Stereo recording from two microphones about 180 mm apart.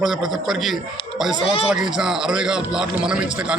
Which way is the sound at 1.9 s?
5° right (ahead or behind).